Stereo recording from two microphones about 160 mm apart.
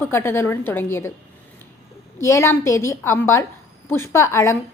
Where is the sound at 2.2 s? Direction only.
15° left (ahead or behind).